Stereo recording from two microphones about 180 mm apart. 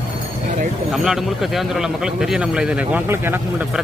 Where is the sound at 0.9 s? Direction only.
Centre (ahead or behind).